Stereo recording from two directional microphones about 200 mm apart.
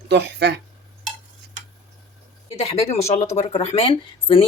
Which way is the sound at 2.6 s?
30° left (ahead or behind).